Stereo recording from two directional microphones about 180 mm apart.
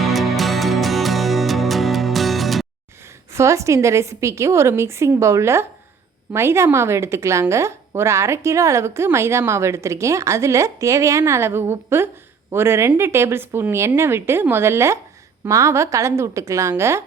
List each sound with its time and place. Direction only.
0.0 s music: centre (ahead or behind)
3.3 s a woman's voice: 15° right (ahead or behind)